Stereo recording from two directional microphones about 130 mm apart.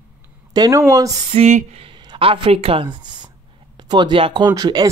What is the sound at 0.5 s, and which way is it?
Speech, 30° right (ahead or behind).